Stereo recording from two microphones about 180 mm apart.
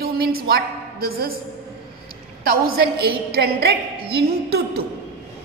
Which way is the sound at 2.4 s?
55° right (ahead or behind).